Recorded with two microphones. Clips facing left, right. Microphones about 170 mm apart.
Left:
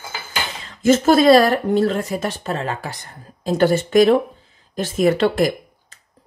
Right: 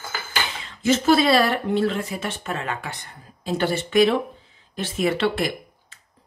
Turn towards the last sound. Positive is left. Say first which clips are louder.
# left 6 dB
turn(degrees=40)  # may be behind; listen again after turning